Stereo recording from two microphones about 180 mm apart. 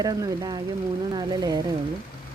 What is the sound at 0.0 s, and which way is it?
Speech, 20° right (ahead or behind).